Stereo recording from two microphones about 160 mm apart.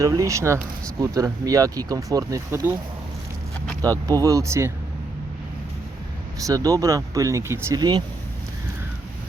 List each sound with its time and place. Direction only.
0.0 s speech: 20° right (ahead or behind)
4.0 s speech: 20° right (ahead or behind)
6.4 s speech: 20° right (ahead or behind)